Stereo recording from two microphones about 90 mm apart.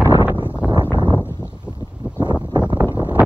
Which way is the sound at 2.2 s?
50° right (ahead or behind).